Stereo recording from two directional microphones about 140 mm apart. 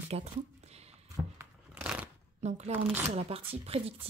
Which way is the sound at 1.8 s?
10° right (ahead or behind).